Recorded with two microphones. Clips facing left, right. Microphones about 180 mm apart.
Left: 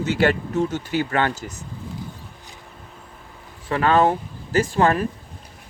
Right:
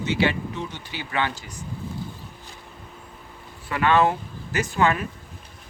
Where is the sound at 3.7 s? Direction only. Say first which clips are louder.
Left 2 dB; 35° left (ahead or behind).